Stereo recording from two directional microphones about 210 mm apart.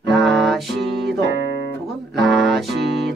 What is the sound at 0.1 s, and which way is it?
Music, centre (ahead or behind).